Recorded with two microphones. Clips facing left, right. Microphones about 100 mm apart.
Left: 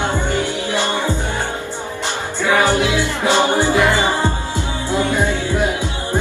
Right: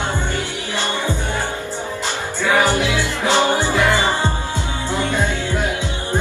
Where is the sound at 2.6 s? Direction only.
20° left (ahead or behind).